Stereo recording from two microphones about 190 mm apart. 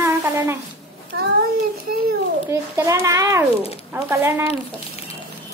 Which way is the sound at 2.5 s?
15° right (ahead or behind).